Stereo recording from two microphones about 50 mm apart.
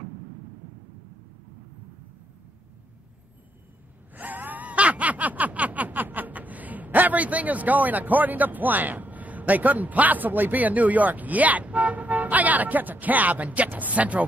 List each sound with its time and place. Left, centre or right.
4.1 s gasp: right